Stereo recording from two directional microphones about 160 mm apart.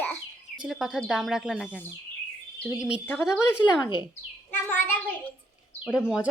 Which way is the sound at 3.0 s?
15° left (ahead or behind).